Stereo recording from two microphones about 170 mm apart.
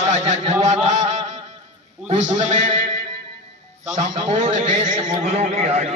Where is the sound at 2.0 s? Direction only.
40° right (ahead or behind).